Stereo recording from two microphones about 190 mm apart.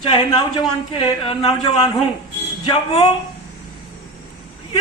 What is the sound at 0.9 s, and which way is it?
A man's voice, 25° left (ahead or behind).